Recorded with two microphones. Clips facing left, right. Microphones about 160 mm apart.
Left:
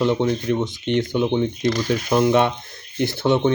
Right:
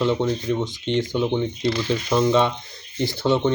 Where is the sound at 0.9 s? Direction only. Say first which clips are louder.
Left 2 dB; 55° left (ahead or behind).